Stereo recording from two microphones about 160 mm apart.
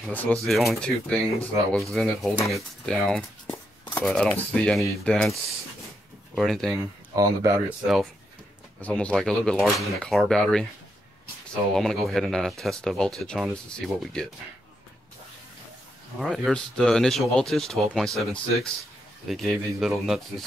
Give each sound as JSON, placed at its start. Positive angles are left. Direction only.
{"t": 0.1, "sound": "speech", "side_deg": 10}
{"t": 6.7, "sound": "speech", "side_deg": -20}
{"t": 7.8, "sound": "speech", "side_deg": 0}
{"t": 11.7, "sound": "speech", "side_deg": 0}
{"t": 16.2, "sound": "speech", "side_deg": 0}